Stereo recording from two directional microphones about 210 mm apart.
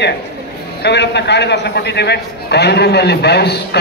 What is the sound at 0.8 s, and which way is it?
A man's voice, 55° left (ahead or behind).